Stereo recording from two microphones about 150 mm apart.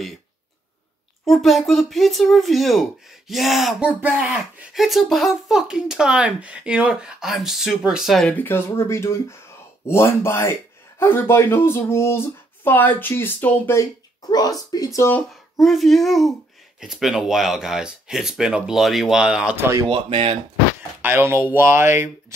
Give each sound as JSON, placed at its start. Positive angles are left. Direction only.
{"t": 1.2, "sound": "speech", "side_deg": 0}
{"t": 15.0, "sound": "speech", "side_deg": 15}
{"t": 15.6, "sound": "speech", "side_deg": 0}
{"t": 19.9, "sound": "speech", "side_deg": -40}
{"t": 21.0, "sound": "speech", "side_deg": -15}